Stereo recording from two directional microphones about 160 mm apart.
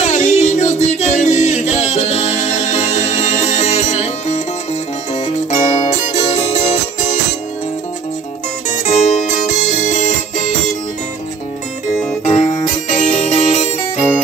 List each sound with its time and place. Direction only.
0.0 s music: 45° left (ahead or behind)
8.6 s music: 50° left (ahead or behind)
12.3 s music: 45° left (ahead or behind)